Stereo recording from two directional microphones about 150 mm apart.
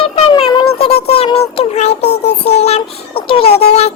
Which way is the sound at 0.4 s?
30° left (ahead or behind).